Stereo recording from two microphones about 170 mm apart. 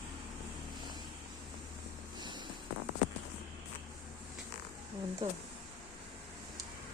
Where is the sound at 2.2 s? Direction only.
25° right (ahead or behind).